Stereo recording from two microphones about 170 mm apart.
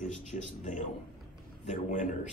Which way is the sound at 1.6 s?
50° left (ahead or behind).